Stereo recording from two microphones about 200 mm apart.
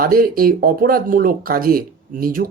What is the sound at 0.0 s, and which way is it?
Speech, 45° right (ahead or behind).